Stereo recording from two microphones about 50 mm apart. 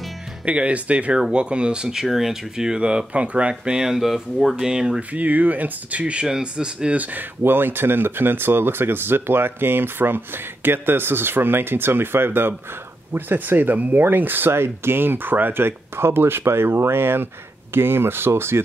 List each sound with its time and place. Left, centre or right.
0.5 s speech: right; by 4.6 s centre
4.6 s speech: centre
5.1 s speech: right
6.2 s speech: centre
7.0 s speech: right
7.4 s speech: right